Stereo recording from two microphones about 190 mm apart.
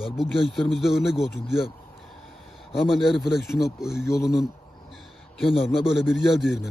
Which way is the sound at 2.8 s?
Centre (ahead or behind).